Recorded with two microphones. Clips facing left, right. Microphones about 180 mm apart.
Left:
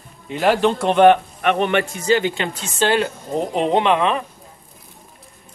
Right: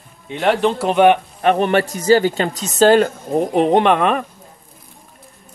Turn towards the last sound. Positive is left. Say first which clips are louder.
# right 3 dB
turn(degrees=-50)  # may be behind; listen again after turning